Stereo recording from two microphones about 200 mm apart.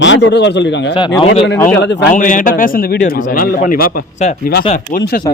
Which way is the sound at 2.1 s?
40° left (ahead or behind).